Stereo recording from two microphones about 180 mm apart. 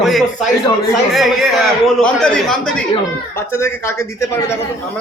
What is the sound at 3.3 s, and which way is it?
A woman's voice, 15° left (ahead or behind).